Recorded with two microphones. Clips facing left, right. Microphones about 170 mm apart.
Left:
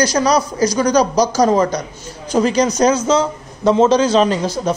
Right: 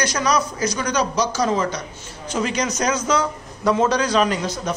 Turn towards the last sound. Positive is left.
turn(degrees=30)  # may be behind; listen again after turning